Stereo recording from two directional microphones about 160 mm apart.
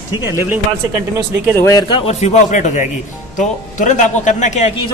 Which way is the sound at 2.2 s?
50° left (ahead or behind).